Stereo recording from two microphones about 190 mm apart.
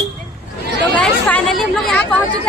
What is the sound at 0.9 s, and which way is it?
Speech, 5° left (ahead or behind).